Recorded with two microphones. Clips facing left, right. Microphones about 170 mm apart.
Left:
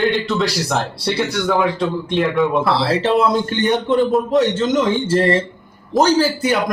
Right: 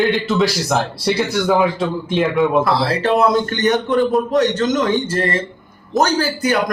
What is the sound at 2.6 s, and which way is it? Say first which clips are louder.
A man's voice: even; 25° left (ahead or behind).